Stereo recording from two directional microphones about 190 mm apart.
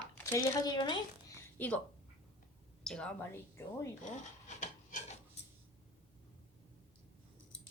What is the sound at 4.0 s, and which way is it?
Rub, 40° left (ahead or behind).